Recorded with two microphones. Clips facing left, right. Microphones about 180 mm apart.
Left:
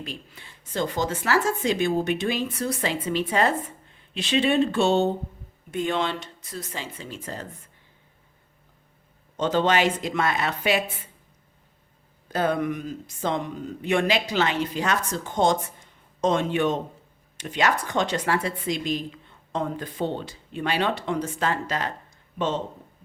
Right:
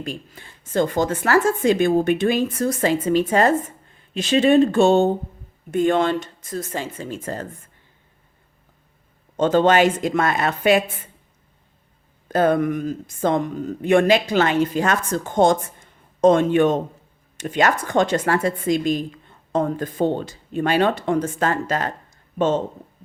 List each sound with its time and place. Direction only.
0.0 s a woman's voice: 45° right (ahead or behind)
9.4 s a woman's voice: 50° right (ahead or behind)
12.3 s a woman's voice: 50° right (ahead or behind)